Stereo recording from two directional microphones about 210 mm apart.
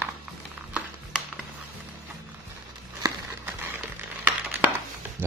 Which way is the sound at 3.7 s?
10° right (ahead or behind).